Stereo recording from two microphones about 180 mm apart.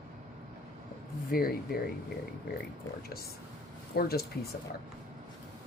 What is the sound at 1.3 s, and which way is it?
Speech, 55° left (ahead or behind).